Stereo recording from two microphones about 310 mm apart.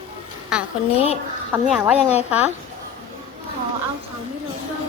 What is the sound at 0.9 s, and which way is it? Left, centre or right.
Speech, centre.